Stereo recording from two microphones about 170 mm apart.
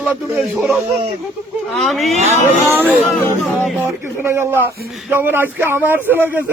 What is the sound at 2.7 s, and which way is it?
Speech, 10° right (ahead or behind).